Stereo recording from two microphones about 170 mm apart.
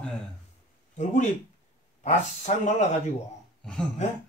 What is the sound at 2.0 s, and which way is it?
Speech, 45° left (ahead or behind).